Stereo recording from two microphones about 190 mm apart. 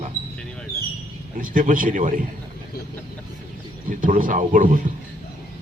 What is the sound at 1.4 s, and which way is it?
Speech, 45° right (ahead or behind).